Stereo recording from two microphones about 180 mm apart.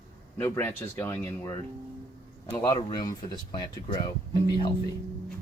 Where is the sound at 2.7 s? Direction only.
20° left (ahead or behind).